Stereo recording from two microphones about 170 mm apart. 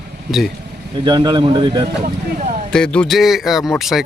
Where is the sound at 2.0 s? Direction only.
45° right (ahead or behind).